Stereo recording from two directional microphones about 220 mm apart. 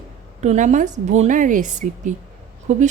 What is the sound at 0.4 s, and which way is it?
A woman's voice, 35° right (ahead or behind).